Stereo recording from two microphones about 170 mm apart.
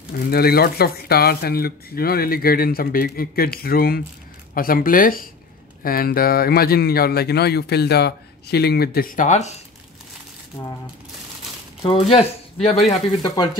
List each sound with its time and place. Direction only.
0.1 s speech: 65° left (ahead or behind); by 9.6 s 45° left (ahead or behind)
11.8 s speech: 35° left (ahead or behind)